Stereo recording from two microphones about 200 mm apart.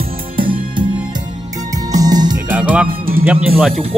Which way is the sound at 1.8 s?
20° right (ahead or behind).